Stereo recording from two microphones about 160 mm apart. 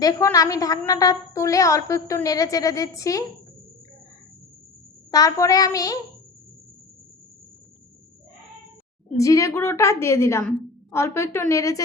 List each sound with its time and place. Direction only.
0.0 s a woman's voice: 20° left (ahead or behind)
5.1 s a woman's voice: 20° left (ahead or behind)
9.1 s a woman's voice: 20° left (ahead or behind)